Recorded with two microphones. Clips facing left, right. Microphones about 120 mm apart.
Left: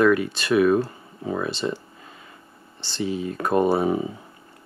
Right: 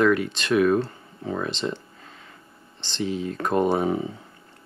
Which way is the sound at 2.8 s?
10° left (ahead or behind).